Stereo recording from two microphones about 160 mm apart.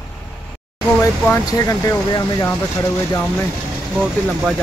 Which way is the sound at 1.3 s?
20° left (ahead or behind).